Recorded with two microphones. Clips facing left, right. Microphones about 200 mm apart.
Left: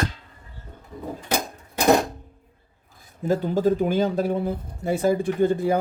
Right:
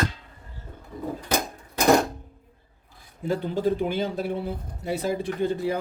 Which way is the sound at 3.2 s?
45° left (ahead or behind).